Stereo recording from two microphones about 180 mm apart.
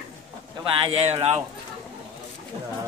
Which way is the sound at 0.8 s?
35° right (ahead or behind).